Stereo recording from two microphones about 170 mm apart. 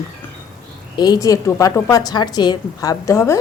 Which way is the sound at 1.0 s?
20° left (ahead or behind).